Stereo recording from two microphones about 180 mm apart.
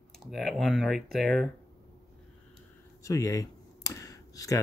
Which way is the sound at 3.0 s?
20° left (ahead or behind).